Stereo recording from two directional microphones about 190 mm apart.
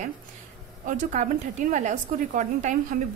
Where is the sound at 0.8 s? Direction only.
45° right (ahead or behind).